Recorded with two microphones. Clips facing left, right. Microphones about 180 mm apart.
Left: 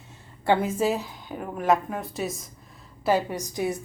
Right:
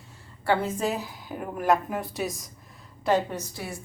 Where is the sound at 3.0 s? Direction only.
10° left (ahead or behind).